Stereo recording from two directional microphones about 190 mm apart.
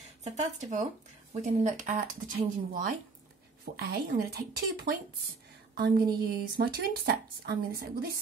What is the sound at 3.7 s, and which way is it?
Speech, 55° right (ahead or behind).